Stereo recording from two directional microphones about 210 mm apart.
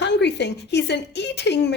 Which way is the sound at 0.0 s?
55° left (ahead or behind).